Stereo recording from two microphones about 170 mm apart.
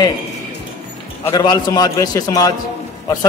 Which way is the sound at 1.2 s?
25° left (ahead or behind).